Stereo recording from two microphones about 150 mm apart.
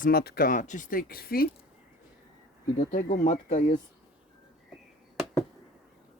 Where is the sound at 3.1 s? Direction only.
50° left (ahead or behind).